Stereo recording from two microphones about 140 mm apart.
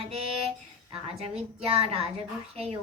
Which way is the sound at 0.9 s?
45° right (ahead or behind).